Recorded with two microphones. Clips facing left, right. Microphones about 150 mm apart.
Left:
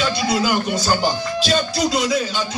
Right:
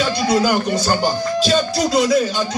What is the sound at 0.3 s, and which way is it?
Speech, 40° right (ahead or behind).